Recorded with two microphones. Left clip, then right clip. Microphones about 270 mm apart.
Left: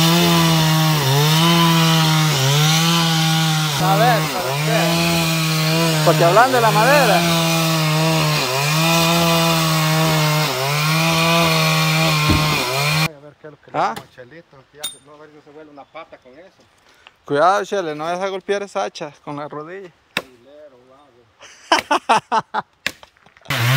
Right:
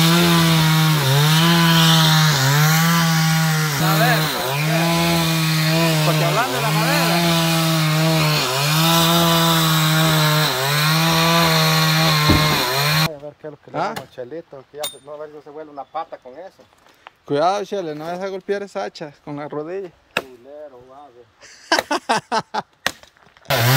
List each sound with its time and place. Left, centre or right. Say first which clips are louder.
0.0 s wood: left 1 dB; left
13.7 s speech: left 4 dB; centre
14.2 s speech: right 8 dB; right
17.3 s speech: left 3 dB; centre
21.6 s a sound: left 3 dB; centre